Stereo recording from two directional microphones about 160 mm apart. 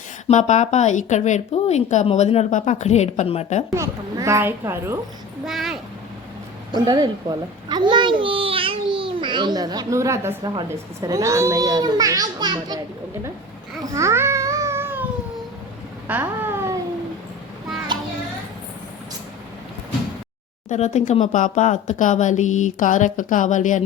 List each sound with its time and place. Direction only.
0.3 s a woman's voice: 45° left (ahead or behind)
3.7 s a child's voice: 20° right (ahead or behind)
5.5 s speech: centre (ahead or behind)
6.7 s a child's voice: 25° right (ahead or behind)
13.9 s cat: 15° right (ahead or behind)
16.0 s a sound: 10° right (ahead or behind)
20.7 s a woman's voice: 45° left (ahead or behind)